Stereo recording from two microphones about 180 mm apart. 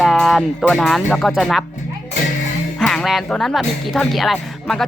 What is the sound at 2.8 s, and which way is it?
Speech, centre (ahead or behind).